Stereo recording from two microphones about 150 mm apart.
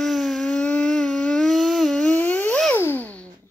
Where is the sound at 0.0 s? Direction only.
Centre (ahead or behind).